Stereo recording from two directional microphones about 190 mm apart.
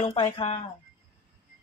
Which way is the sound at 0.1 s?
25° left (ahead or behind).